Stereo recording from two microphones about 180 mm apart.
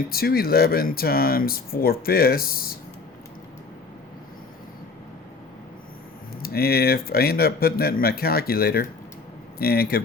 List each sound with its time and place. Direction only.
0.1 s speech: 60° left (ahead or behind)
6.4 s speech: 60° left (ahead or behind)